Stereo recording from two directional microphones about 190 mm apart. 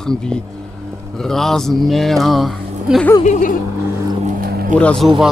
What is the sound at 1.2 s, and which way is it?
Speech, centre (ahead or behind).